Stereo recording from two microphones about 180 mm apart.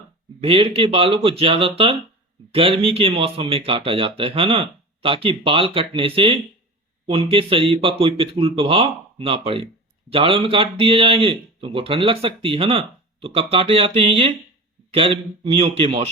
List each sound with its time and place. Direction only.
0.4 s speech: 30° right (ahead or behind)